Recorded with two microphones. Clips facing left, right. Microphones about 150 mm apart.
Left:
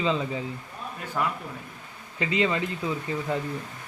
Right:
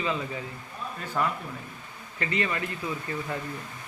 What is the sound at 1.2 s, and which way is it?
A man's voice, 10° left (ahead or behind).